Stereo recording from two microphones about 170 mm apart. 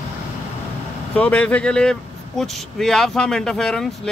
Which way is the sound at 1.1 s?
10° left (ahead or behind).